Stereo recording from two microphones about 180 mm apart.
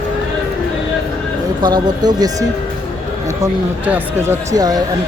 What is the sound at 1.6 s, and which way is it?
Speech, 20° right (ahead or behind).